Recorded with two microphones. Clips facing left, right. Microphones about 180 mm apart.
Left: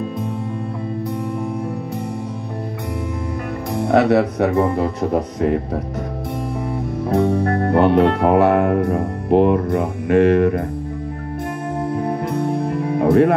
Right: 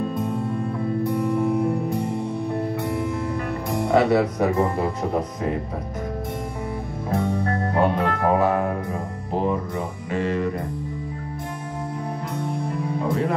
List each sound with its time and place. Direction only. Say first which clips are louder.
3.9 s speech: left 4 dB; 65° left (ahead or behind)
7.1 s music: left 6 dB; 70° left (ahead or behind)
11.9 s music: left 9 dB; 60° left (ahead or behind)